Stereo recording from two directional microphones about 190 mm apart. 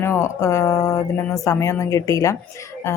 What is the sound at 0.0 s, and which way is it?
Speech, 15° left (ahead or behind).